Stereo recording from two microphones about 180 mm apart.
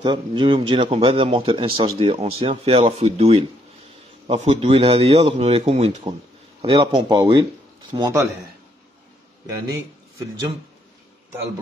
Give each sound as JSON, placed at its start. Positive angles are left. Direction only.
{"t": 0.0, "sound": "speech", "side_deg": -25}